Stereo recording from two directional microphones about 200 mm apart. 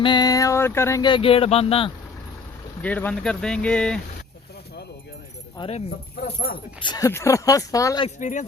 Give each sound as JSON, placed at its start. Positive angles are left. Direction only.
{"t": 0.0, "sound": "speech", "side_deg": 20}
{"t": 2.8, "sound": "speech", "side_deg": 5}
{"t": 5.5, "sound": "speech", "side_deg": 30}
{"t": 6.1, "sound": "speech", "side_deg": 50}
{"t": 6.7, "sound": "speech", "side_deg": 20}
{"t": 8.0, "sound": "speech", "side_deg": 35}